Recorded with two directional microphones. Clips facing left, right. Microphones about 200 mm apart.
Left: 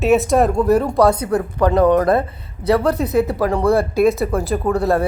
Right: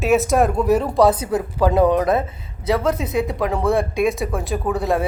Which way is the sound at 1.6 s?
10° right (ahead or behind).